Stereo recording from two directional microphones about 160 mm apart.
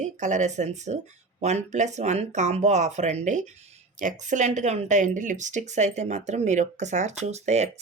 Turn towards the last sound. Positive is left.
turn(degrees=-45)  # may be behind; listen again after turning